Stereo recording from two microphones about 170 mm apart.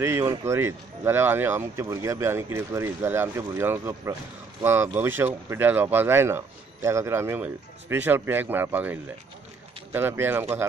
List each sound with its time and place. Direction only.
0.0 s speech: 15° right (ahead or behind)